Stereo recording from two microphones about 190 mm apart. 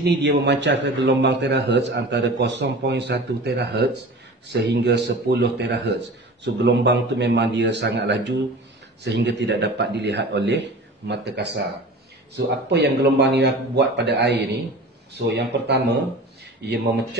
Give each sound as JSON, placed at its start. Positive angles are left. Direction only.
{"t": 0.0, "sound": "a man's voice", "side_deg": -65}